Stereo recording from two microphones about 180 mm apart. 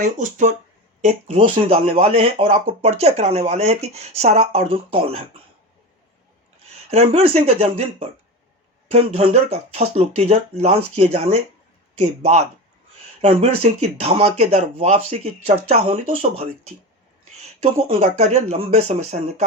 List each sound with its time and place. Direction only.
0.0 s speech: 45° right (ahead or behind)
1.0 s speech: 30° right (ahead or behind)
6.9 s speech: 35° right (ahead or behind)